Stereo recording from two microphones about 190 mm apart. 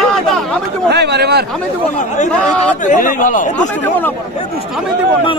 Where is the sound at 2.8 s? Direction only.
40° left (ahead or behind).